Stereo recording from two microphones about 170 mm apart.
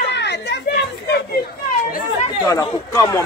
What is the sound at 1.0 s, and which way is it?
Chatter, 70° left (ahead or behind).